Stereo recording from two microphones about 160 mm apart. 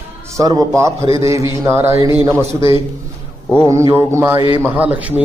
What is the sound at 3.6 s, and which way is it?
A man's voice, 15° right (ahead or behind).